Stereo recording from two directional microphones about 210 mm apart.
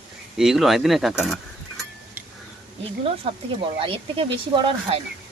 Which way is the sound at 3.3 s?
30° right (ahead or behind).